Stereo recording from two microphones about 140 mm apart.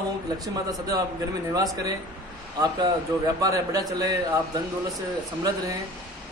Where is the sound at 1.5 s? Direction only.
25° right (ahead or behind).